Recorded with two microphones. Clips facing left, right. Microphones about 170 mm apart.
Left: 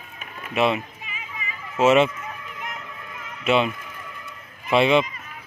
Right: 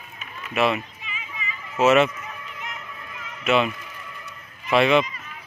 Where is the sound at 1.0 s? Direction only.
45° left (ahead or behind).